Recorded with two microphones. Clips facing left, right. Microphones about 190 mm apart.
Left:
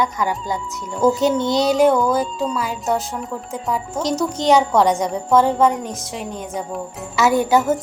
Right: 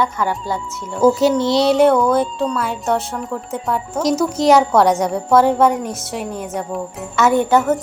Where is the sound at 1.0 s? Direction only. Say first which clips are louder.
Right 3 dB; centre (ahead or behind).